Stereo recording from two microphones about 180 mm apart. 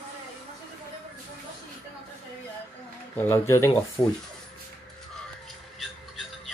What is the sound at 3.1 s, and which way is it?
Speech, 15° left (ahead or behind).